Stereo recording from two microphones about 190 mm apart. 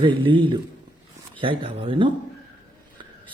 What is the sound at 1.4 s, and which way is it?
Speech, 25° right (ahead or behind).